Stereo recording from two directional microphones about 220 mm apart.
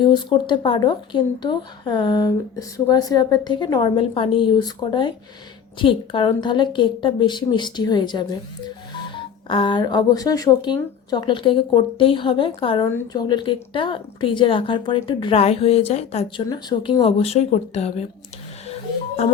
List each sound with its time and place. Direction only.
0.0 s speech: 20° left (ahead or behind)
18.7 s music: 30° left (ahead or behind)